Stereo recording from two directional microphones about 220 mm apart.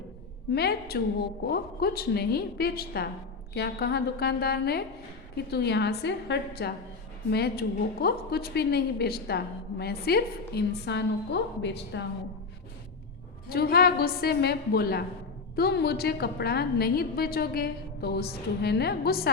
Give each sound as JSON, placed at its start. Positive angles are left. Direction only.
{"t": 0.5, "sound": "a woman's voice", "side_deg": 45}
{"t": 13.5, "sound": "a woman's voice", "side_deg": 45}